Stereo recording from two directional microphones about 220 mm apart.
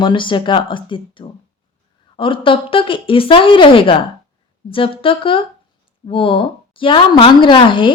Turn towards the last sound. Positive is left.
turn(degrees=20)  # may be behind; listen again after turning